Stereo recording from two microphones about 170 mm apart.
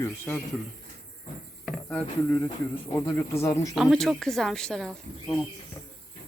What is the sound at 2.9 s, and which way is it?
Speech, 20° left (ahead or behind).